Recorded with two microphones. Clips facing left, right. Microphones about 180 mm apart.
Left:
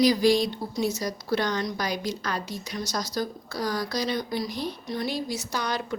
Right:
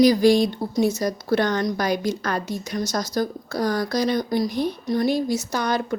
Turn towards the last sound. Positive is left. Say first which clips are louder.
# right 6 dB
turn(degrees=-50)  # may be behind; listen again after turning